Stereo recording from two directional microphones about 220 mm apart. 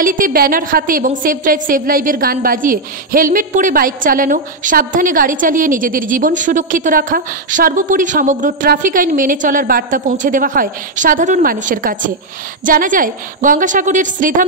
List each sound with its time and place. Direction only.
0.0 s a woman's voice: 40° right (ahead or behind)